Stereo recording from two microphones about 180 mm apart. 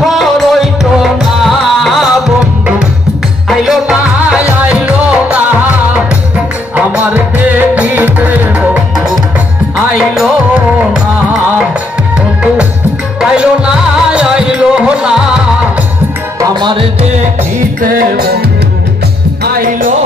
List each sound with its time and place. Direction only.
0.0 s music: centre (ahead or behind)
3.4 s music: centre (ahead or behind)
6.7 s music: 10° right (ahead or behind)
13.2 s music: 5° right (ahead or behind)
16.3 s music: 20° right (ahead or behind)
17.2 s music: 50° right (ahead or behind)